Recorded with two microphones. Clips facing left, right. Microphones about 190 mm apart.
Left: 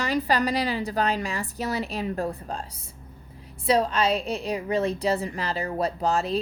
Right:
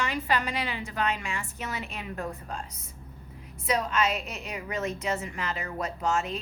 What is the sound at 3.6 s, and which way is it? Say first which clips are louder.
A woman's voice: left 5 dB; 30° left (ahead or behind).